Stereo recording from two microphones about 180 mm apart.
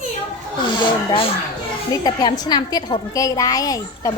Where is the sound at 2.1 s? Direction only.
20° left (ahead or behind).